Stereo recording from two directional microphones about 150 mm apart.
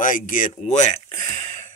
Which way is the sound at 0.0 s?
60° left (ahead or behind).